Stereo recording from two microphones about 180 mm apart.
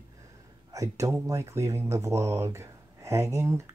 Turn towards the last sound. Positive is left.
turn(degrees=-15)  # may be behind; listen again after turning